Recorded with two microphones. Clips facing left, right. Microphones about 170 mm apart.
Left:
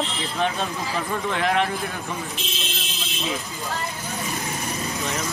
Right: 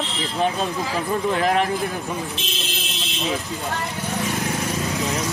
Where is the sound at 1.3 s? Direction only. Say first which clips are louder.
Right 2 dB; 35° right (ahead or behind).